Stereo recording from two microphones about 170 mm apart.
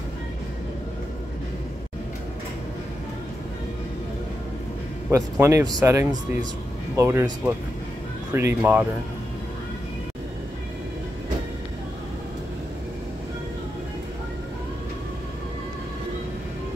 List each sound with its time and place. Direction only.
5.1 s a man's voice: 15° right (ahead or behind)